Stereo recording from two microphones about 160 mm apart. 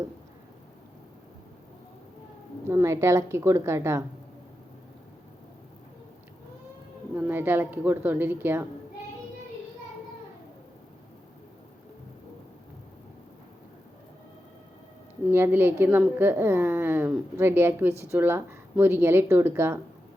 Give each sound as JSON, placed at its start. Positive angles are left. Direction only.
{"t": 2.6, "sound": "a woman's voice", "side_deg": -15}
{"t": 7.2, "sound": "a woman's voice", "side_deg": -10}
{"t": 15.3, "sound": "a woman's voice", "side_deg": -15}